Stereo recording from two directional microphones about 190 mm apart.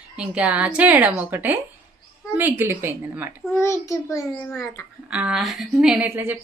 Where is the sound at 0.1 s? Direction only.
5° right (ahead or behind).